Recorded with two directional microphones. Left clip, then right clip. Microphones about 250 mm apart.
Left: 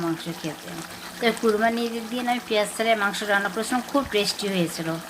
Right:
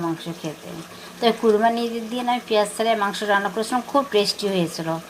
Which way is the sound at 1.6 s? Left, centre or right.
Centre.